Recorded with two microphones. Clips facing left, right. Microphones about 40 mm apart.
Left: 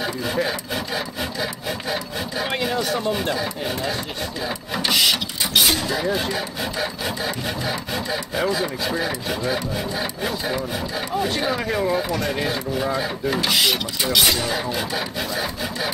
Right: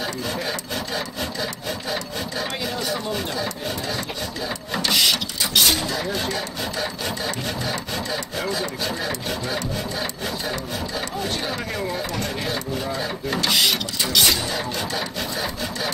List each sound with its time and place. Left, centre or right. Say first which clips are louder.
0.0 s wood: left 3 dB; centre
2.6 s a sound: left 5 dB; left
3.3 s speech: left 2 dB; centre
4.8 s printer: left 1 dB; centre
5.4 s a sound: left 1 dB; centre
5.9 s speech: left 3 dB; centre